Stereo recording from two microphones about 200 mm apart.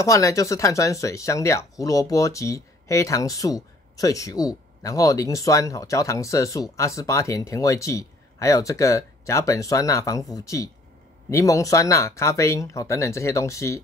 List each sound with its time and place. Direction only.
0.0 s speech: 15° left (ahead or behind)